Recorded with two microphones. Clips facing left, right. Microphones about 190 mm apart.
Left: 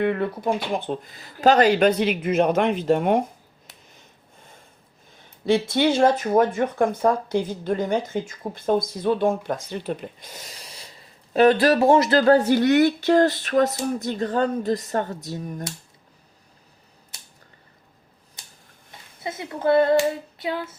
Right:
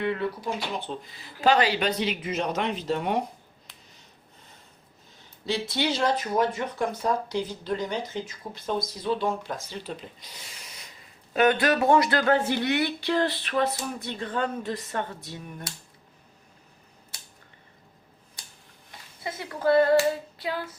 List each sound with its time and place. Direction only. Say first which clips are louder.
0.0 s speech: left 5 dB; 55° left (ahead or behind)
5.5 s speech: left 8 dB; 55° left (ahead or behind)
18.9 s hands: left 3 dB; 20° left (ahead or behind)